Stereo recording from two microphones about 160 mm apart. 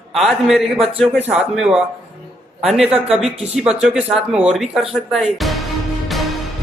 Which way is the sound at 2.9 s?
40° right (ahead or behind).